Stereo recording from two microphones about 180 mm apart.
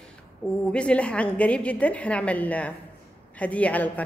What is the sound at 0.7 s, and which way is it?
A woman's voice, 5° left (ahead or behind).